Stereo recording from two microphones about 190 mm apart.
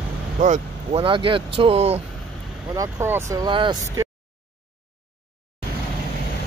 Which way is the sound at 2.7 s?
15° right (ahead or behind).